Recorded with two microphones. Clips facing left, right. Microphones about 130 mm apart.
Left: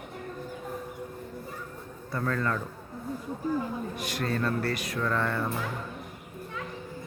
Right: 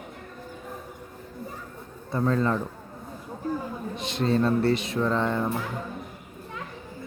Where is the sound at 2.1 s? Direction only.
20° right (ahead or behind).